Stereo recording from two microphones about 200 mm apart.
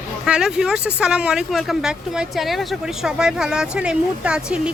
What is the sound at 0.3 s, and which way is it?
Speech, 5° right (ahead or behind).